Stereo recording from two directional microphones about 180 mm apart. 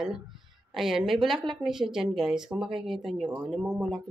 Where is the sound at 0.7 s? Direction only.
Centre (ahead or behind).